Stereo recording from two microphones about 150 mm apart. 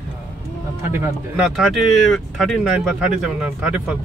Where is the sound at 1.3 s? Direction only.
Centre (ahead or behind).